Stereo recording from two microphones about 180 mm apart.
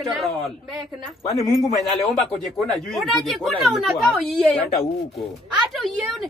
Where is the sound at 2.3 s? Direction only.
Centre (ahead or behind).